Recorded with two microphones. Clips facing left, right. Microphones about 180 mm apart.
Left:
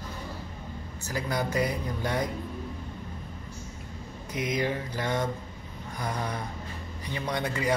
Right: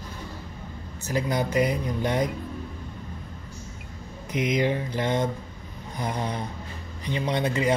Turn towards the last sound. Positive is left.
turn(degrees=-20)  # may be behind; listen again after turning